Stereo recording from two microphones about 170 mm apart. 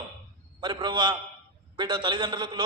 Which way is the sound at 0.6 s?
25° right (ahead or behind).